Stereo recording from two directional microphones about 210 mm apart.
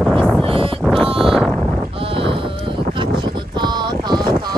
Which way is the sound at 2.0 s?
25° right (ahead or behind).